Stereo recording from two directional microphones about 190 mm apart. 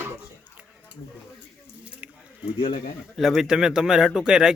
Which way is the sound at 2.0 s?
5° right (ahead or behind).